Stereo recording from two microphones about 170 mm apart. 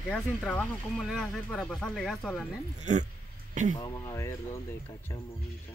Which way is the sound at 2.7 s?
45° right (ahead or behind).